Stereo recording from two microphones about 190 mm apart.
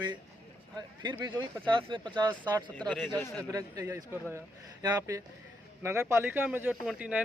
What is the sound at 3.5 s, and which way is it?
A man's voice, 20° right (ahead or behind).